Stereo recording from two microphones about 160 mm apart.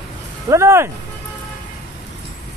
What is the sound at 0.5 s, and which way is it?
Speech, 15° right (ahead or behind).